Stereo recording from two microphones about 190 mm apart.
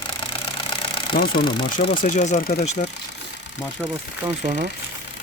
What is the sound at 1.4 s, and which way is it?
Speech, 25° left (ahead or behind).